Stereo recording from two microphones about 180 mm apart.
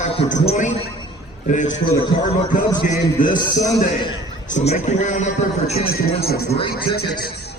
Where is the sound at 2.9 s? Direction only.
45° left (ahead or behind).